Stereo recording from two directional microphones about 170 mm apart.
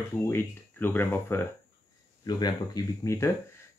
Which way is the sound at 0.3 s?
10° left (ahead or behind).